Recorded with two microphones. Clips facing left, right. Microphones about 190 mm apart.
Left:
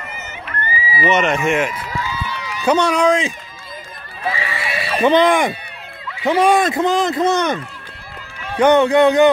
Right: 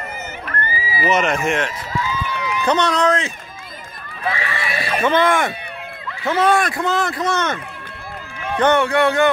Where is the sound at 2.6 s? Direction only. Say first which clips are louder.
Left 3 dB; 10° left (ahead or behind).